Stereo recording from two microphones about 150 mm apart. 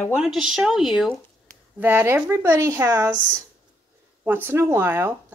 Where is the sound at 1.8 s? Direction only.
15° right (ahead or behind).